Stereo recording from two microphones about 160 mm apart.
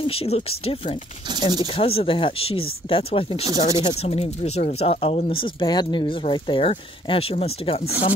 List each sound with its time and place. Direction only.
0.0 s speech: 35° left (ahead or behind)
3.4 s speech: 25° right (ahead or behind)
3.8 s speech: 40° left (ahead or behind)